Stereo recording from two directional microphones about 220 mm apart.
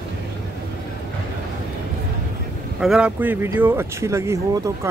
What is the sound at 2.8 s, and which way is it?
Speech, 5° right (ahead or behind).